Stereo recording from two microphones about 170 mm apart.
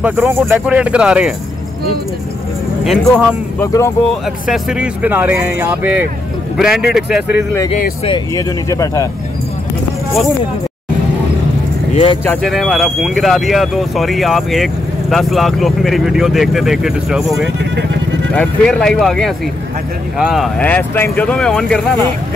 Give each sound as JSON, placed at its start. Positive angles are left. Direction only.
{"t": 0.0, "sound": "speech", "side_deg": -10}
{"t": 2.8, "sound": "speech", "side_deg": 0}
{"t": 3.5, "sound": "speech", "side_deg": 15}
{"t": 4.5, "sound": "speech", "side_deg": -5}
{"t": 8.4, "sound": "speech", "side_deg": 20}
{"t": 11.9, "sound": "speech", "side_deg": 35}
{"t": 12.3, "sound": "speech", "side_deg": 5}